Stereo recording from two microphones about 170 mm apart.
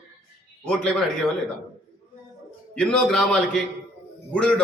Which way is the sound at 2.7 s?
5° left (ahead or behind).